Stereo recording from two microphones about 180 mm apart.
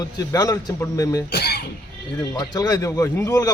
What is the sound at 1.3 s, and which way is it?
Speech, 65° left (ahead or behind).